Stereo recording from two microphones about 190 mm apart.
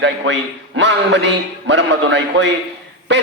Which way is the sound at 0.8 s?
70° right (ahead or behind).